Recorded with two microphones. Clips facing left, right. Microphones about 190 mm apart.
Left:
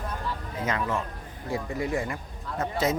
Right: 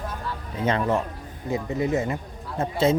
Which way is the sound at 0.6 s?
35° right (ahead or behind).